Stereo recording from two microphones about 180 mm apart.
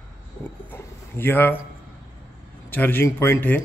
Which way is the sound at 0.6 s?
10° left (ahead or behind).